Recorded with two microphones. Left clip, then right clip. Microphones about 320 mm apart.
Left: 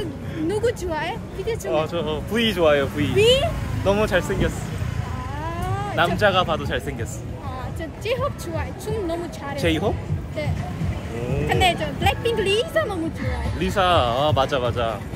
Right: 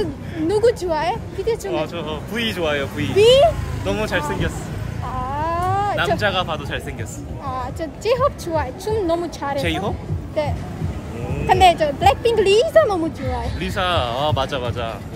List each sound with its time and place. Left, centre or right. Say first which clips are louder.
0.0 s speech: right 4 dB; centre
1.7 s speech: left 1 dB; centre
3.2 s speech: right 5 dB; centre
3.8 s speech: left 2 dB; centre
5.4 s a sound: right 9 dB; centre
5.9 s speech: left 1 dB; centre
7.5 s speech: right 7 dB; centre
9.6 s speech: left 3 dB; centre
11.4 s speech: right 8 dB; centre
13.6 s speech: left 3 dB; centre